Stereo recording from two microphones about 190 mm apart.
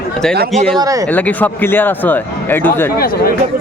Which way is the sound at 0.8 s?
20° right (ahead or behind).